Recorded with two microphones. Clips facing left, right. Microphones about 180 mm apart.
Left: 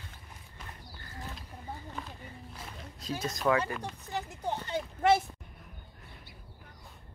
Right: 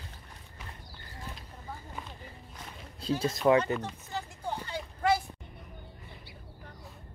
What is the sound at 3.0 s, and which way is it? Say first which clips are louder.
Speech: right 6 dB; 30° right (ahead or behind).